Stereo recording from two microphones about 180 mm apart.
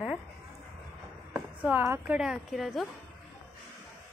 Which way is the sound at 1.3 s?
10° right (ahead or behind).